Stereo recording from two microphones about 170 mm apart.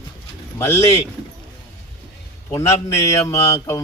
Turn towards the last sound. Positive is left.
turn(degrees=20)  # may be behind; listen again after turning